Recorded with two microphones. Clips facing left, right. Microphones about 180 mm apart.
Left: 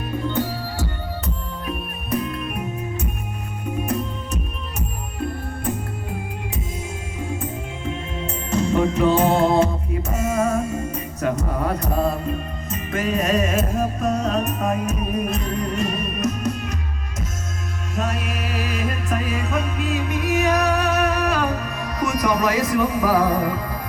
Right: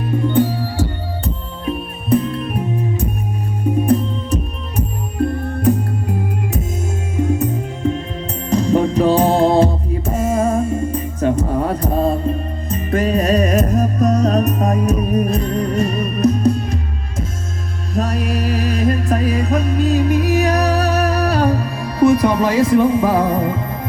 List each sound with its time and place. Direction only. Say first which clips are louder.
0.3 s music: right 9 dB; 30° right (ahead or behind)
7.3 s music: right 7 dB; 40° right (ahead or behind)
17.9 s music: right 7 dB; 35° right (ahead or behind)